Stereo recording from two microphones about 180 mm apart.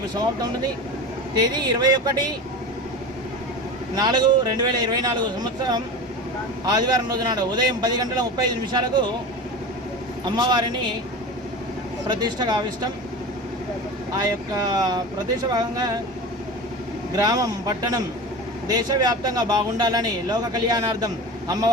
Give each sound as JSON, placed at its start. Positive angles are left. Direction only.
{"t": 1.4, "sound": "speech", "side_deg": -20}
{"t": 3.9, "sound": "speech", "side_deg": -25}
{"t": 10.3, "sound": "speech", "side_deg": -25}
{"t": 12.0, "sound": "speech", "side_deg": -25}
{"t": 14.2, "sound": "speech", "side_deg": -20}
{"t": 17.2, "sound": "speech", "side_deg": -20}